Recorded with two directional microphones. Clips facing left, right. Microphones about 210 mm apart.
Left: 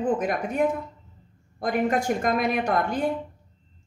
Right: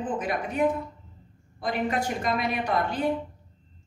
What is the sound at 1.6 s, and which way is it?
A woman's voice, 50° left (ahead or behind).